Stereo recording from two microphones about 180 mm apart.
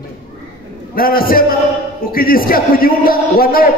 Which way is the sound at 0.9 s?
55° left (ahead or behind).